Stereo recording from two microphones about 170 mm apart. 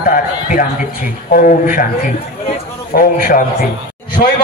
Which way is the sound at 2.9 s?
60° left (ahead or behind).